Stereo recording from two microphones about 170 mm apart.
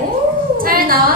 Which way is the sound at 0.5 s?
60° right (ahead or behind).